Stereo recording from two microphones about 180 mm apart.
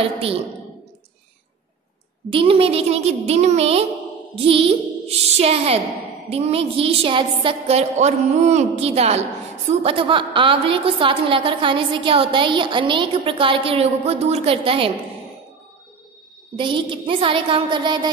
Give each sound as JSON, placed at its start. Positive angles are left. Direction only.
{"t": 2.2, "sound": "a woman's voice", "side_deg": -30}
{"t": 16.5, "sound": "a woman's voice", "side_deg": -25}